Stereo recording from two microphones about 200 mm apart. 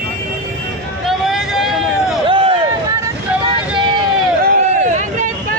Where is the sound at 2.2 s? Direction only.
25° right (ahead or behind).